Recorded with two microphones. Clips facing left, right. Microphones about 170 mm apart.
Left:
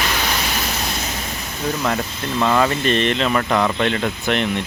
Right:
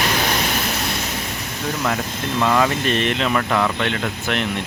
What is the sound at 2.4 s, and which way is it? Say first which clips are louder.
Speech: left 1 dB; centre (ahead or behind).